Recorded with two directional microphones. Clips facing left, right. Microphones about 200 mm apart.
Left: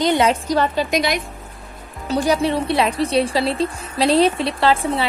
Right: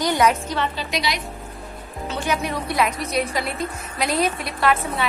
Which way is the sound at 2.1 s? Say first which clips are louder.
Left 7 dB; 35° left (ahead or behind).